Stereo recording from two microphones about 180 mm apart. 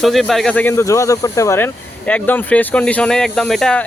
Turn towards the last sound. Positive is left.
turn(degrees=5)  # may be behind; listen again after turning